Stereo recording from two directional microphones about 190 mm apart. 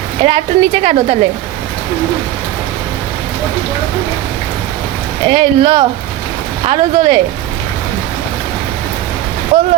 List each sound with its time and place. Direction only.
0.2 s a woman's voice: 35° right (ahead or behind)
5.2 s speech: 30° right (ahead or behind)